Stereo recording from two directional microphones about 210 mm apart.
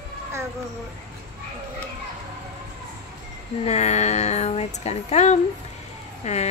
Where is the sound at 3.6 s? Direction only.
30° left (ahead or behind).